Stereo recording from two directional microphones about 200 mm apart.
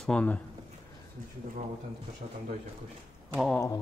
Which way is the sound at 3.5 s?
15° left (ahead or behind).